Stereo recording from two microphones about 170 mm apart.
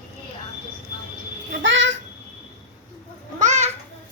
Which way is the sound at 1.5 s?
90° right.